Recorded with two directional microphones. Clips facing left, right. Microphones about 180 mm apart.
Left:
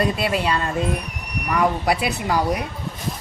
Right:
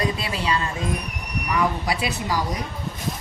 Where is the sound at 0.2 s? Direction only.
60° left (ahead or behind).